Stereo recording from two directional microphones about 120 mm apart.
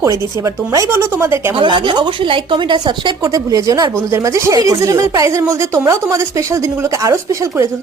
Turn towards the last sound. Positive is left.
turn(degrees=-25)  # may be behind; listen again after turning